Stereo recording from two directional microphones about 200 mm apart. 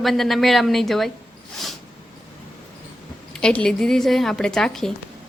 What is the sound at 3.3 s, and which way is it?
A woman's voice, 5° left (ahead or behind).